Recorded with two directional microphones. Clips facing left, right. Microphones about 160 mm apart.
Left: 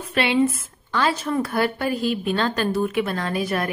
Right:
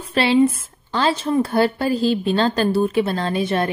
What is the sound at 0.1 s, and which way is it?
A woman's voice, 30° right (ahead or behind).